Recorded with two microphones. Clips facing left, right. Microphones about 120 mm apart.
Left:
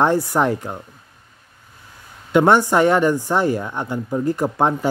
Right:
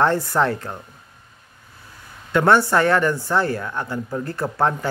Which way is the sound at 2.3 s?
15° left (ahead or behind).